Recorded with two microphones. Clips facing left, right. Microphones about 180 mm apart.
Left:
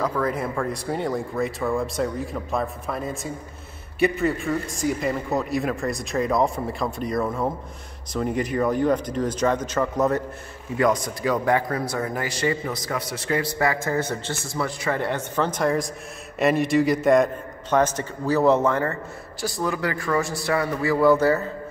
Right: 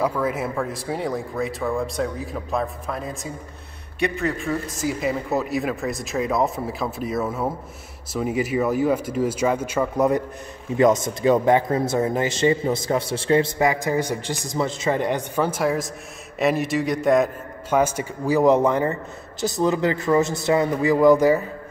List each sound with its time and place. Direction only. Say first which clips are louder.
0.0 s a man's voice: right 1 dB; 5° right (ahead or behind)
10.8 s a man's voice: right 4 dB; 25° right (ahead or behind)